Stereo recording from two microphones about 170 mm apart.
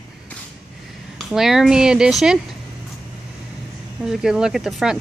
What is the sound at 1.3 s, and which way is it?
A woman's voice, centre (ahead or behind).